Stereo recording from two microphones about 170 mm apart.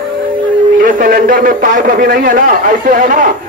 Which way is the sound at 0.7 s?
55° right (ahead or behind).